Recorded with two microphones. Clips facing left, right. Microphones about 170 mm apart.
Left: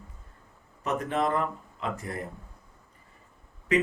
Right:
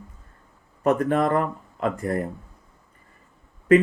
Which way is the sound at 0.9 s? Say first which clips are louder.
Right 7 dB; 50° right (ahead or behind).